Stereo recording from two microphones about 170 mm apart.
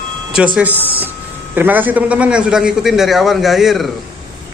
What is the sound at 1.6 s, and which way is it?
A man's voice, 10° right (ahead or behind).